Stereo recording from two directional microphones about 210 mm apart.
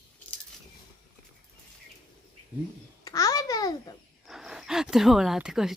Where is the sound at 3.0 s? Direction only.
15° left (ahead or behind).